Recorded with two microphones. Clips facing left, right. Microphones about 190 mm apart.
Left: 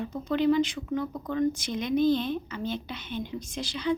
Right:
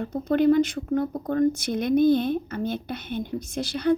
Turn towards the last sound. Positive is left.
turn(degrees=-55)  # may be behind; listen again after turning